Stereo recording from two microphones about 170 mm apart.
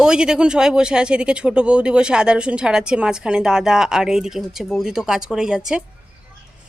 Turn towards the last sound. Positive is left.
turn(degrees=-5)  # may be behind; listen again after turning